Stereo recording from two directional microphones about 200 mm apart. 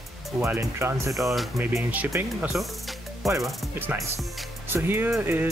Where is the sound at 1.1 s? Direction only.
Centre (ahead or behind).